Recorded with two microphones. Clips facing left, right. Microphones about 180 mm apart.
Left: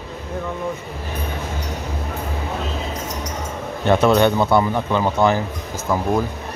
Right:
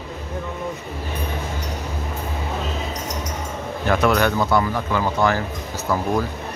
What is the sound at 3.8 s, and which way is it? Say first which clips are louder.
Speech: left 4 dB; 25° left (ahead or behind).